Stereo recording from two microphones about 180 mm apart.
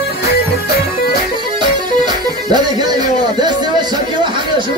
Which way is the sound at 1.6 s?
25° right (ahead or behind).